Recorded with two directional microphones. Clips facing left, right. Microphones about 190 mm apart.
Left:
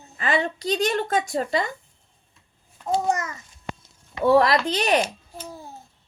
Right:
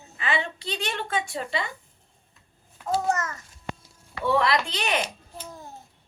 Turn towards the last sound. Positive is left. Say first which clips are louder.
# left 5 dB
turn(degrees=40)  # may be behind; listen again after turning